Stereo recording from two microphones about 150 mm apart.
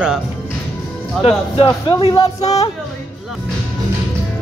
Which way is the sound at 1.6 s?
30° left (ahead or behind).